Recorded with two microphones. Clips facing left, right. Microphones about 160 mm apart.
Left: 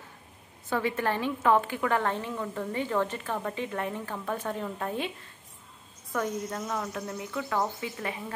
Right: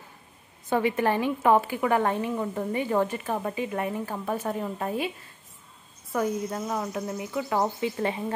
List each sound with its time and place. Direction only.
0.7 s a woman's voice: 15° right (ahead or behind)
6.1 s a woman's voice: 10° right (ahead or behind)